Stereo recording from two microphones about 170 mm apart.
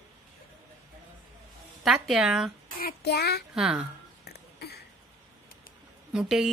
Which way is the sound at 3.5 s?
5° right (ahead or behind).